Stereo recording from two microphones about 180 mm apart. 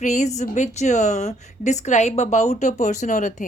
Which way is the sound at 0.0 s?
40° left (ahead or behind).